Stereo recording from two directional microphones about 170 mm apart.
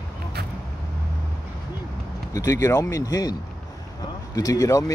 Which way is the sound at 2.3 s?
20° left (ahead or behind).